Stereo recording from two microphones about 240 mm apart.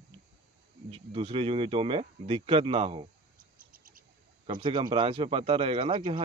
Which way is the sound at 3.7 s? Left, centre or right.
Right.